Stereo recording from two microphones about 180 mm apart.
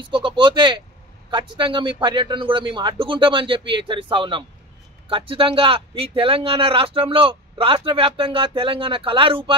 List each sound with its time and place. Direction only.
0.0 s a man's voice: 25° right (ahead or behind)